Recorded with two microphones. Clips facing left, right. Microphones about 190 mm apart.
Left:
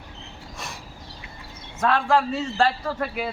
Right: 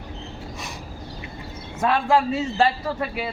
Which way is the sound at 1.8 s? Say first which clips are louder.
Right 1 dB; 10° right (ahead or behind).